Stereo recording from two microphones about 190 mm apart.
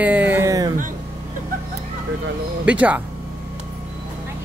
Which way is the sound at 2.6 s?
5° right (ahead or behind).